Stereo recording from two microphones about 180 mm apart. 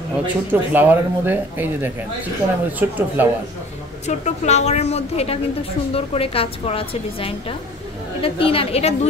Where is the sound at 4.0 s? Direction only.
40° left (ahead or behind).